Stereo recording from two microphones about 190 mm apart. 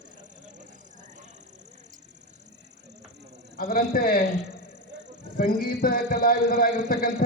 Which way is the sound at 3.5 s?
50° left (ahead or behind).